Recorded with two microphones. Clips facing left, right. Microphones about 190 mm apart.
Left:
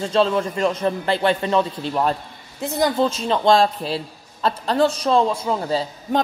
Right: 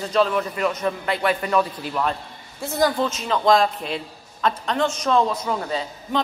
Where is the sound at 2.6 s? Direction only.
20° left (ahead or behind).